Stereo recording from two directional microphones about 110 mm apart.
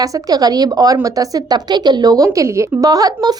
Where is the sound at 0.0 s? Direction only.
35° right (ahead or behind).